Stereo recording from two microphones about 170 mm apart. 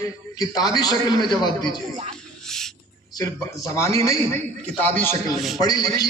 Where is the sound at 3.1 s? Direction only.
20° left (ahead or behind).